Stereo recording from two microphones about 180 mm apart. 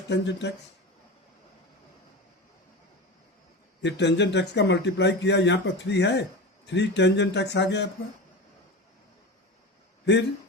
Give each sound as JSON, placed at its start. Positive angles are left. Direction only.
{"t": 0.1, "sound": "speech", "side_deg": 70}
{"t": 3.8, "sound": "speech", "side_deg": 75}